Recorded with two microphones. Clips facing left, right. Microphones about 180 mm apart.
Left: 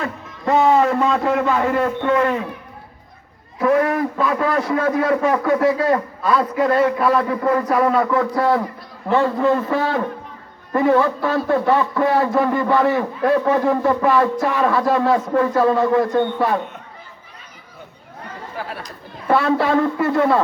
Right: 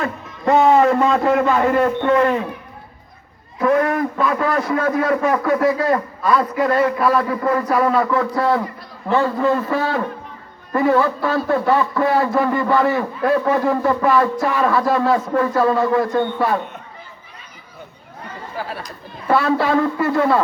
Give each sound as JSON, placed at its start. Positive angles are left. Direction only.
{"t": 0.0, "sound": "a man's voice", "side_deg": -55}
{"t": 2.0, "sound": "speech", "side_deg": -35}
{"t": 3.6, "sound": "a man's voice", "side_deg": 5}
{"t": 19.3, "sound": "a man's voice", "side_deg": 20}